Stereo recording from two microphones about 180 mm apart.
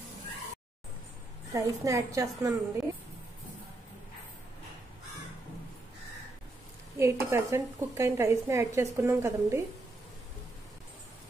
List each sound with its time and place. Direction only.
1.5 s speech: 20° right (ahead or behind)
7.0 s speech: 15° right (ahead or behind)